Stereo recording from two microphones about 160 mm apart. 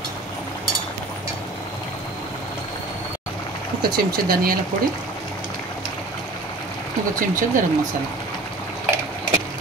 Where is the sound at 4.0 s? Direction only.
70° right (ahead or behind).